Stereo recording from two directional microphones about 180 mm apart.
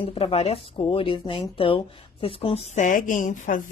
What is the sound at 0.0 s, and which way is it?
A woman's voice, 30° left (ahead or behind).